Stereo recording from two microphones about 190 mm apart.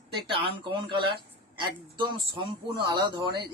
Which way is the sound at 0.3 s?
25° right (ahead or behind).